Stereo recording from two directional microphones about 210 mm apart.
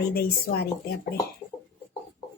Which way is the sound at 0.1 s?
50° left (ahead or behind).